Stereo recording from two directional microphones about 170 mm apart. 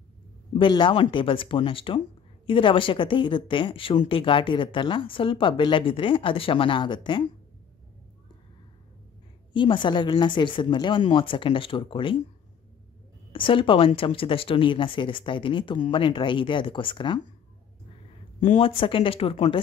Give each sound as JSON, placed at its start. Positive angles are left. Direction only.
{"t": 0.6, "sound": "a woman's voice", "side_deg": 30}
{"t": 9.5, "sound": "a woman's voice", "side_deg": 30}
{"t": 13.3, "sound": "a woman's voice", "side_deg": 30}
{"t": 18.4, "sound": "a woman's voice", "side_deg": 35}